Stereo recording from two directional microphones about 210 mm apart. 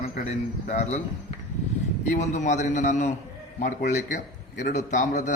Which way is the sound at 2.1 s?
35° left (ahead or behind).